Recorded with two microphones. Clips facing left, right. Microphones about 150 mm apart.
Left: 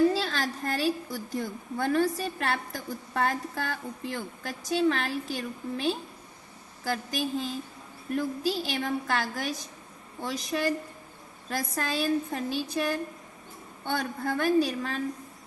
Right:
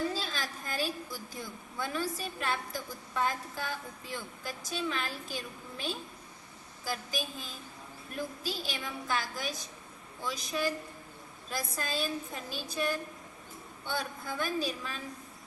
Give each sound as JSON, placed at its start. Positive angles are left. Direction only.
{"t": 0.1, "sound": "a woman's voice", "side_deg": 70}